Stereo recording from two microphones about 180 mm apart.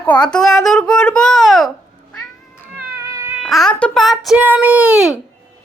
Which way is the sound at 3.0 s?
15° right (ahead or behind).